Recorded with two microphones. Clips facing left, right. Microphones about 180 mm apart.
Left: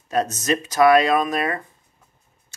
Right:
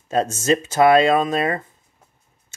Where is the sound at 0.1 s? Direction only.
30° right (ahead or behind).